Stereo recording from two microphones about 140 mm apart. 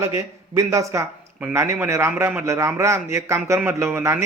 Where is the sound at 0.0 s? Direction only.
20° right (ahead or behind).